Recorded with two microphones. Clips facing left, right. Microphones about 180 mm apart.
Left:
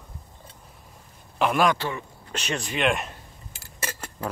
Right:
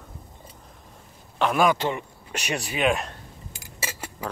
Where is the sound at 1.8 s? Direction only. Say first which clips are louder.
Right 4 dB; 20° right (ahead or behind); by 3.2 s centre (ahead or behind).